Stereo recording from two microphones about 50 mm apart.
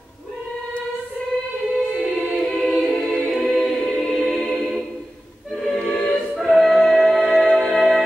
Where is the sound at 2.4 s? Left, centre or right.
Centre.